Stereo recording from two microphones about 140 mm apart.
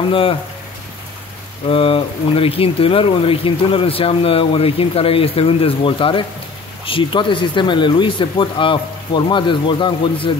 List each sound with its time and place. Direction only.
0.1 s speech: 40° left (ahead or behind)
1.7 s speech: 40° left (ahead or behind)